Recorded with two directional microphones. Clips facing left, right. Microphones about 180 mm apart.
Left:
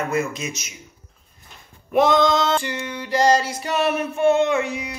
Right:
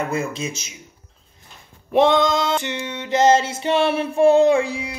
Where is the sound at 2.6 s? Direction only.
25° right (ahead or behind).